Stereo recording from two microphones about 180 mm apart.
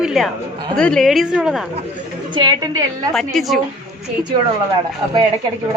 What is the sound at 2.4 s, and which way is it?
Speech, 20° right (ahead or behind).